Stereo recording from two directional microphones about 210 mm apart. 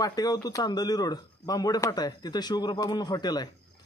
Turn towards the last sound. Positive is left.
turn(degrees=20)  # may be behind; listen again after turning